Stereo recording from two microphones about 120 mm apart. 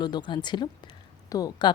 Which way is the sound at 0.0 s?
40° left (ahead or behind).